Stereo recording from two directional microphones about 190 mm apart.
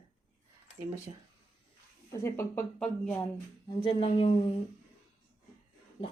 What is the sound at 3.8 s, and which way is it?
Speech, 30° left (ahead or behind).